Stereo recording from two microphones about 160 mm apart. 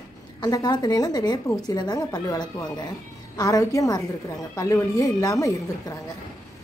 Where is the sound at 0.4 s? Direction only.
25° left (ahead or behind).